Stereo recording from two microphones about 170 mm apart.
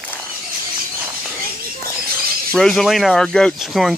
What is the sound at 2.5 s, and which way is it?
Speech, centre (ahead or behind).